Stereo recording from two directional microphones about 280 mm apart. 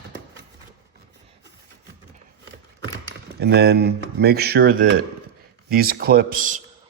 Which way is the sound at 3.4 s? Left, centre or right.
Right.